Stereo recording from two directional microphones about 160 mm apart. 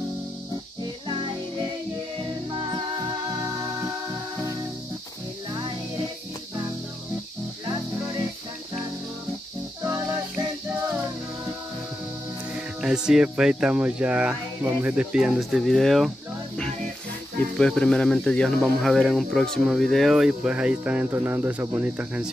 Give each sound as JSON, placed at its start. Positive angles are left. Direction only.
{"t": 1.0, "sound": "music", "side_deg": -30}
{"t": 12.8, "sound": "speech", "side_deg": -5}
{"t": 17.6, "sound": "speech", "side_deg": 5}